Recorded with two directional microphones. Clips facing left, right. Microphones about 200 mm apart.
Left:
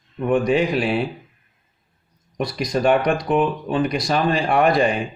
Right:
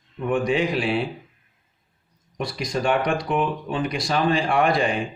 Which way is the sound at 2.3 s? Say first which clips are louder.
Left 4 dB; 40° left (ahead or behind).